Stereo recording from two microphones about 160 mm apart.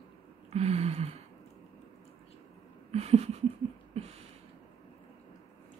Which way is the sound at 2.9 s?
40° right (ahead or behind).